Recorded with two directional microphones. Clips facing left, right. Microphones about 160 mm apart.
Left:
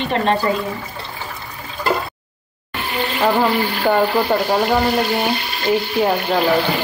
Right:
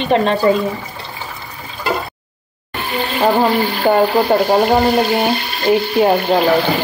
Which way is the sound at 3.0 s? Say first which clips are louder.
Right 3 dB; 20° right (ahead or behind).